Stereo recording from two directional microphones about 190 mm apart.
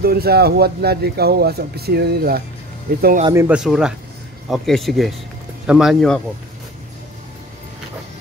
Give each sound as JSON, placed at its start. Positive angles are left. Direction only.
{"t": 0.0, "sound": "speech", "side_deg": -55}
{"t": 3.3, "sound": "speech", "side_deg": -10}